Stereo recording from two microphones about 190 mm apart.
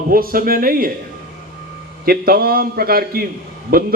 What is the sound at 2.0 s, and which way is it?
A man's voice, 50° right (ahead or behind).